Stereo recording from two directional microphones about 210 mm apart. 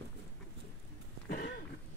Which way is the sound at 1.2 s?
50° left (ahead or behind).